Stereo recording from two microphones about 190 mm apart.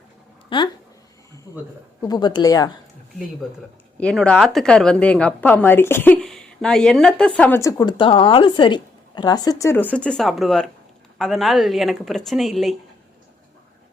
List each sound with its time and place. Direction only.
0.5 s speech: 25° left (ahead or behind)
2.0 s speech: 20° left (ahead or behind)
3.9 s a woman's voice: 5° left (ahead or behind)